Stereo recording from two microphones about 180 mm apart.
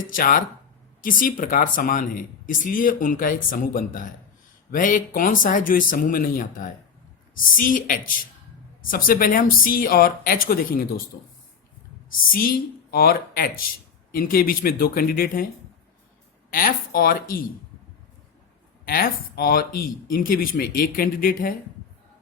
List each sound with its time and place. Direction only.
0.1 s speech: 50° left (ahead or behind)
12.3 s speech: 55° left (ahead or behind)
16.5 s speech: 50° left (ahead or behind)
18.9 s speech: 55° left (ahead or behind)